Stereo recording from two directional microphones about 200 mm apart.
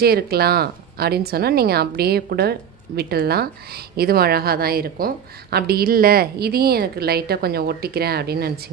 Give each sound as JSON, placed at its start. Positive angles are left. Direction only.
{"t": 0.0, "sound": "a woman's voice", "side_deg": -50}